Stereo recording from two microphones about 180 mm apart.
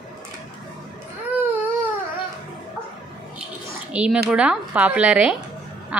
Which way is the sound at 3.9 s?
5° right (ahead or behind).